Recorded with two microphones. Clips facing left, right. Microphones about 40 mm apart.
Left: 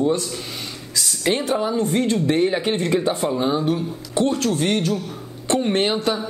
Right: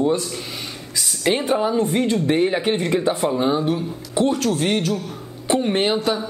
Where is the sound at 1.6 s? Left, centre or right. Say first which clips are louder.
Right 1 dB; centre.